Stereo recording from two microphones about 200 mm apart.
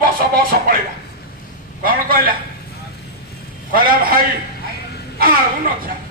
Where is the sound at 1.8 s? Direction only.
45° right (ahead or behind).